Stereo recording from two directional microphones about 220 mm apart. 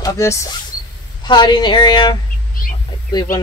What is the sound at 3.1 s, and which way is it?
Speech, 20° left (ahead or behind).